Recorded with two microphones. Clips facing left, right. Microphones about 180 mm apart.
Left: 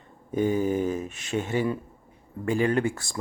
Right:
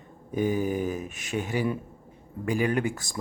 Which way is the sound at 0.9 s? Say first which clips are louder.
Left 3 dB; 15° right (ahead or behind).